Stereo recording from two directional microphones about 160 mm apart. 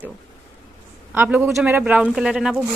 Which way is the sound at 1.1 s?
10° right (ahead or behind).